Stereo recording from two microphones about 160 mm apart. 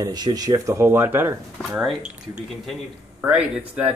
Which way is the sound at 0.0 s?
25° right (ahead or behind).